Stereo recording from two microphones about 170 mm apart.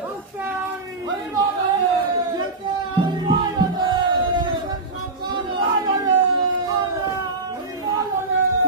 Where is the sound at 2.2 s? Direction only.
25° right (ahead or behind).